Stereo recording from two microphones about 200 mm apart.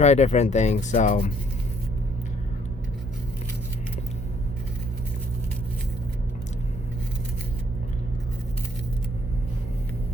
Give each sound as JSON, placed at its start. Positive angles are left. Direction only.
{"t": 0.0, "sound": "speech", "side_deg": 35}